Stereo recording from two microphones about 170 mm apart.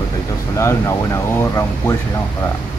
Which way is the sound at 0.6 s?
15° left (ahead or behind).